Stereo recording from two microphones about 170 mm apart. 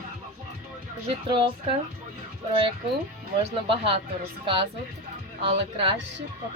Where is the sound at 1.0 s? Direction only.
30° right (ahead or behind).